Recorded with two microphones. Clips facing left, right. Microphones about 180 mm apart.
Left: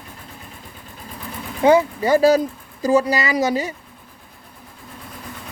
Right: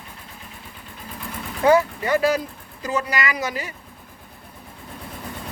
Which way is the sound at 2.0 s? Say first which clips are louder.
Left 6 dB; 35° left (ahead or behind).